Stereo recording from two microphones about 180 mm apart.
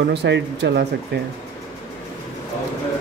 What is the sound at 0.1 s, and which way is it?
Speech, 70° right (ahead or behind).